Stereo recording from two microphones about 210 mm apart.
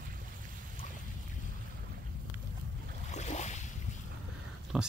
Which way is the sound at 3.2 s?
35° left (ahead or behind).